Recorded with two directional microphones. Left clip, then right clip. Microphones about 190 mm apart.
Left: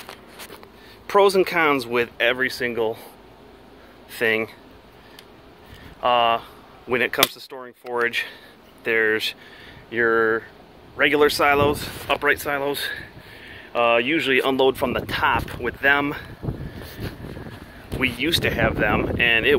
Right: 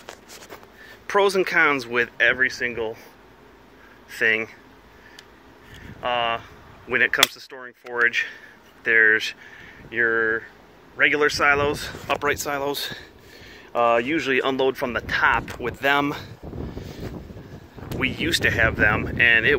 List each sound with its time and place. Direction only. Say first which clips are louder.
1.0 s speech: left 3 dB; 10° left (ahead or behind); by 3.0 s 30° left (ahead or behind)
4.2 s speech: even; 20° left (ahead or behind)
6.0 s speech: left 5 dB; 30° left (ahead or behind)
6.9 s speech: right 1 dB; 15° left (ahead or behind)
9.8 s speech: left 2 dB; 30° left (ahead or behind); by 11.7 s 15° left (ahead or behind)
11.7 s speech: left 2 dB; centre (ahead or behind)
15.6 s speech: left 4 dB; 25° right (ahead or behind)
17.9 s speech: left 2 dB; centre (ahead or behind)